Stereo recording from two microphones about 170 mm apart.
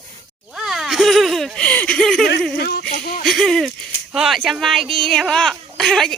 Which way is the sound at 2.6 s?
70° left (ahead or behind).